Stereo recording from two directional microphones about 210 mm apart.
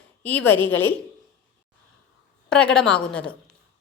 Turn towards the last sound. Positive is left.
turn(degrees=5)  # may be behind; listen again after turning